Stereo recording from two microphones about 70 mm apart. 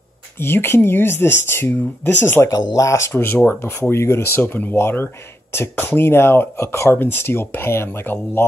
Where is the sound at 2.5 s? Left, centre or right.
Left.